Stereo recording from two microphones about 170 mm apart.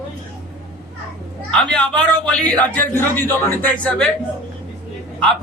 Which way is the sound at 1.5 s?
5° left (ahead or behind).